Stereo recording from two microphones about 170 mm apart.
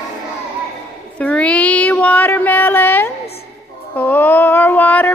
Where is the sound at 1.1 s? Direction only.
10° left (ahead or behind).